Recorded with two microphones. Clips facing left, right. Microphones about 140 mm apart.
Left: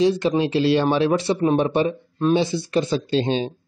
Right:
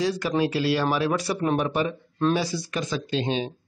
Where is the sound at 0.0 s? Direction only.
25° left (ahead or behind).